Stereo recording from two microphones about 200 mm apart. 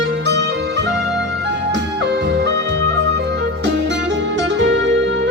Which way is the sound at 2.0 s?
60° right (ahead or behind).